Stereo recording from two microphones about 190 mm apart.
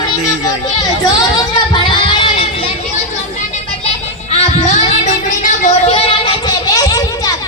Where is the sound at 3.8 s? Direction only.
35° left (ahead or behind).